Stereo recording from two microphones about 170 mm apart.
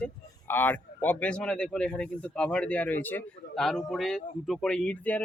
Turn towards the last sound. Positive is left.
turn(degrees=10)  # may be behind; listen again after turning